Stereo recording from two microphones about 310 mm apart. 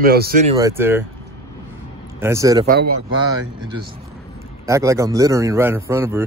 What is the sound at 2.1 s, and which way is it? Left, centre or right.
Speech, centre.